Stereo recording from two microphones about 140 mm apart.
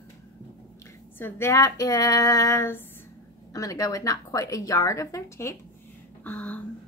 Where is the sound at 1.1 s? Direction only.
15° left (ahead or behind).